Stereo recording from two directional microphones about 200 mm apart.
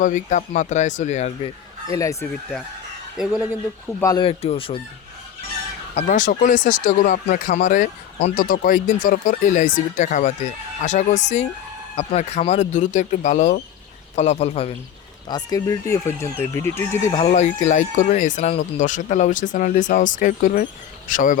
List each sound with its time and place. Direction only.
0.0 s speech: 40° left (ahead or behind)
1.9 s speech: 15° left (ahead or behind)
2.3 s speech: 5° left (ahead or behind)
4.0 s speech: 20° left (ahead or behind)
5.9 s speech: 35° left (ahead or behind)
15.3 s speech: 20° left (ahead or behind)
17.1 s speech: 30° left (ahead or behind)